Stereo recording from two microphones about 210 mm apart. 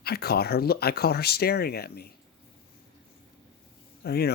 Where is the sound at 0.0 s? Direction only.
50° left (ahead or behind).